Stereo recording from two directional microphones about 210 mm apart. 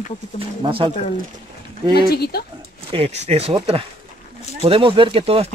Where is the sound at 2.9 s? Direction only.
30° right (ahead or behind).